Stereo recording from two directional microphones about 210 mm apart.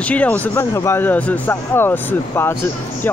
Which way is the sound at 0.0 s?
5° left (ahead or behind).